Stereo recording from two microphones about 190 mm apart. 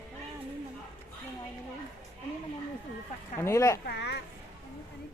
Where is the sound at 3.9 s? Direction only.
65° left (ahead or behind).